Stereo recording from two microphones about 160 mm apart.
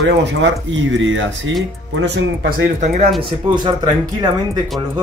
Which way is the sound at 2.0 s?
90° right.